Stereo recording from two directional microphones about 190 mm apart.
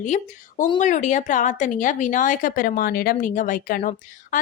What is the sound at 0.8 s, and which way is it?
A woman's voice, 40° left (ahead or behind).